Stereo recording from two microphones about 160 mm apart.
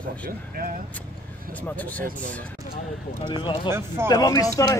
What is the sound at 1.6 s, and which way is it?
Speech, 10° left (ahead or behind).